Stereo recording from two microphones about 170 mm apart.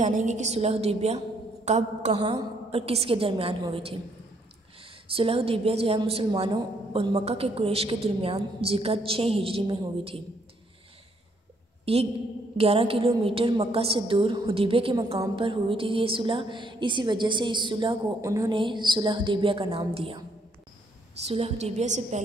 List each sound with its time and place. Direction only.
0.0 s a woman's voice: 45° right (ahead or behind)
2.1 s a woman's voice: 25° right (ahead or behind)
5.1 s a woman's voice: 35° right (ahead or behind)
11.8 s a woman's voice: 35° right (ahead or behind); by 18.5 s 20° right (ahead or behind)
18.5 s a woman's voice: 30° right (ahead or behind)